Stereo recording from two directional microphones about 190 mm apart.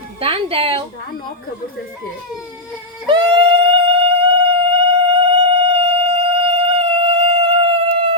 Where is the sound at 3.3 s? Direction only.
30° right (ahead or behind).